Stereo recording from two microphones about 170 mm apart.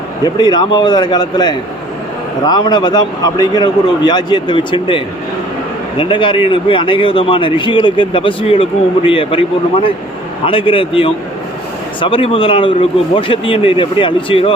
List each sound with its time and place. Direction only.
0.3 s a man's voice: 25° left (ahead or behind)